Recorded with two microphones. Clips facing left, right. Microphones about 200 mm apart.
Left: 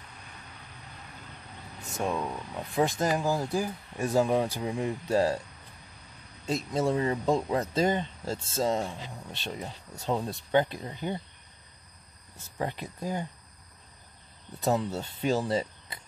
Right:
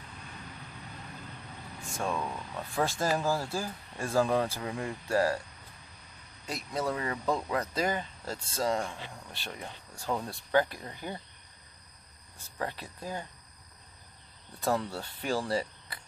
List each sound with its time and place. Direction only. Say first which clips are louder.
1.8 s speech: left 3 dB; 20° left (ahead or behind)
6.4 s speech: left 5 dB; 25° left (ahead or behind)
12.5 s speech: left 3 dB; 20° left (ahead or behind)
14.6 s speech: left 3 dB; 20° left (ahead or behind)